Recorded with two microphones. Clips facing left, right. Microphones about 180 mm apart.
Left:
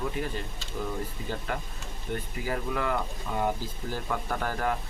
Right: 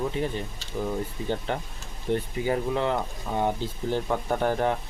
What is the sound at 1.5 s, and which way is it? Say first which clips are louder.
Speech: right 3 dB; 25° right (ahead or behind).